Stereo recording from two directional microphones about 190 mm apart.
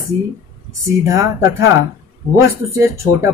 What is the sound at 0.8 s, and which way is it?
A woman's voice, 15° right (ahead or behind).